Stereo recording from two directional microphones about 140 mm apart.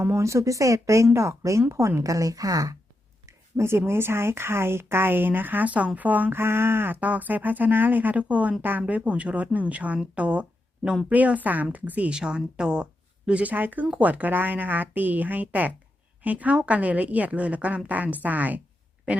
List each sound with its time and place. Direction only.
0.0 s speech: 20° right (ahead or behind)